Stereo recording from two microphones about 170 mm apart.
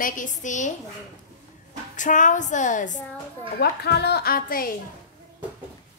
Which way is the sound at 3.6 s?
75° left (ahead or behind).